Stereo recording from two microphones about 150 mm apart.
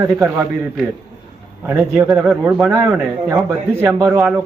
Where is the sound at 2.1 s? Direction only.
10° right (ahead or behind).